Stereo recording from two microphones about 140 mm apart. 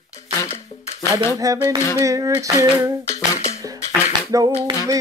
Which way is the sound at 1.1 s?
25° right (ahead or behind).